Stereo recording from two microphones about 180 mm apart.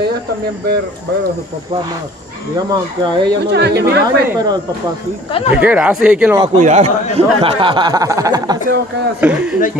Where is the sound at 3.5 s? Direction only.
65° right (ahead or behind).